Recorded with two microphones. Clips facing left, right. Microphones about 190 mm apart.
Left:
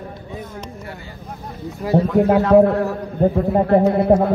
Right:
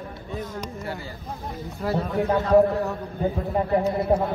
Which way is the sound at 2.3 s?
70° left (ahead or behind).